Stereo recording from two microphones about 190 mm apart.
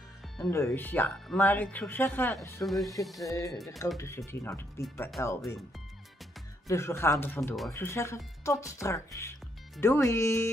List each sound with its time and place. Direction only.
0.4 s speech: 15° left (ahead or behind)
2.6 s speech: centre (ahead or behind)
3.3 s speech: 15° left (ahead or behind)
6.7 s speech: 15° left (ahead or behind)